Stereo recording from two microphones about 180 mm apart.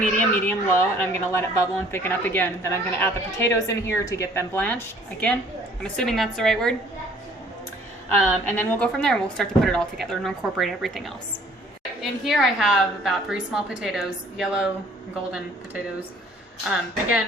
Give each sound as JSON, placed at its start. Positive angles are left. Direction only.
{"t": 0.0, "sound": "a woman's voice", "side_deg": 10}
{"t": 8.1, "sound": "a woman's voice", "side_deg": 10}
{"t": 12.2, "sound": "a woman's voice", "side_deg": 0}
{"t": 16.6, "sound": "speech", "side_deg": -10}